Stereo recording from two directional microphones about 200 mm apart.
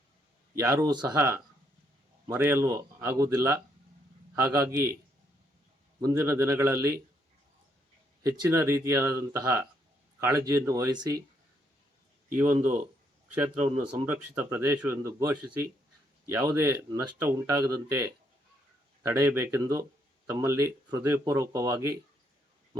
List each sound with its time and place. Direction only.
0.6 s speech: 15° right (ahead or behind)
6.0 s speech: 15° right (ahead or behind)
8.2 s speech: 15° right (ahead or behind)
12.4 s speech: 10° right (ahead or behind)
14.0 s speech: 10° right (ahead or behind)
19.0 s speech: 10° right (ahead or behind)